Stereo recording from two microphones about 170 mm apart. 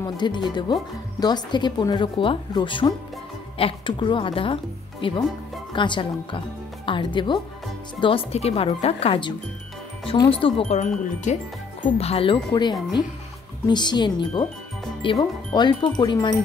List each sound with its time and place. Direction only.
0.0 s speech: 25° left (ahead or behind)